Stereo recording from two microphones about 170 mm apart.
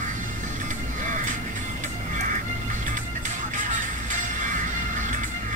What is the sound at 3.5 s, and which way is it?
Music, 50° right (ahead or behind).